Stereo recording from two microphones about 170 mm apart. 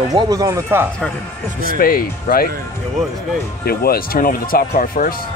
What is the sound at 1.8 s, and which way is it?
Speech, 60° left (ahead or behind).